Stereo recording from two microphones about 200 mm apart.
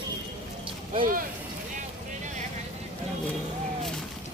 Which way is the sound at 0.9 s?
45° right (ahead or behind).